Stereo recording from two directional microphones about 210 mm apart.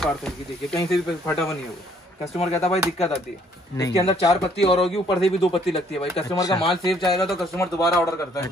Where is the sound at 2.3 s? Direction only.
30° left (ahead or behind).